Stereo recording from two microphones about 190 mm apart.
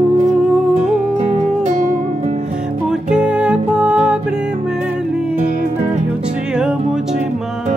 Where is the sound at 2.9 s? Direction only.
5° right (ahead or behind).